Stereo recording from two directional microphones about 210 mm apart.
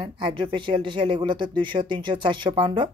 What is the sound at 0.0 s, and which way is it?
Speech, 25° right (ahead or behind).